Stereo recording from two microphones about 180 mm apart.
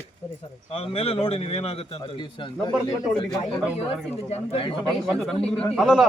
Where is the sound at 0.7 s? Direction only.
35° left (ahead or behind).